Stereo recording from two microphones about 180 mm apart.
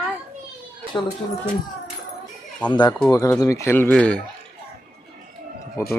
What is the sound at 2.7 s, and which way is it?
Speech, 25° left (ahead or behind).